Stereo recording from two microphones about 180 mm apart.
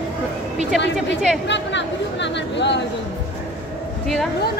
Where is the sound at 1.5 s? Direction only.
80° left.